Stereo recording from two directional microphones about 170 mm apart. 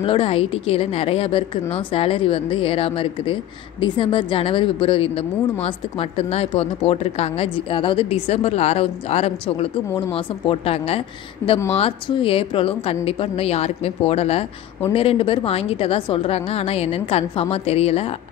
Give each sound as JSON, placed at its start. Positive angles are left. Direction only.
{"t": 0.0, "sound": "a woman's voice", "side_deg": 35}